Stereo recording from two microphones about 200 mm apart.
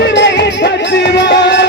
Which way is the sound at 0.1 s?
60° left (ahead or behind).